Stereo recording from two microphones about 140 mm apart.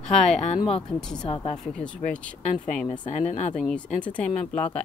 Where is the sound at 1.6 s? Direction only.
5° left (ahead or behind).